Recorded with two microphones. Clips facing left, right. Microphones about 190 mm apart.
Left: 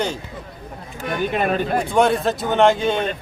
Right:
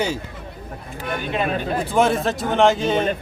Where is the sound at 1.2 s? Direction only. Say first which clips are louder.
Left 3 dB; 50° left (ahead or behind).